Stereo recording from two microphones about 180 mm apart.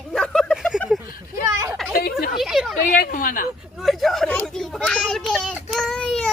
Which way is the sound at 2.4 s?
Centre (ahead or behind).